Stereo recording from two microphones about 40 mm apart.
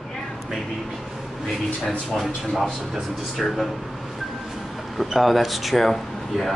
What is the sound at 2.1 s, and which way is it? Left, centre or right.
Speech, centre.